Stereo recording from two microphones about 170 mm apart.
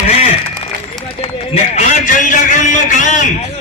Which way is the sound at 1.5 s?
40° left (ahead or behind).